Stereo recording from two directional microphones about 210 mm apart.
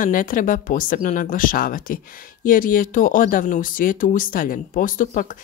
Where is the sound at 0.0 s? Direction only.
40° left (ahead or behind).